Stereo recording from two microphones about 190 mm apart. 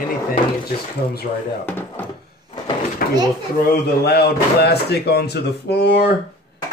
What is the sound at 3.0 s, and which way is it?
Drawer open or close, 50° left (ahead or behind).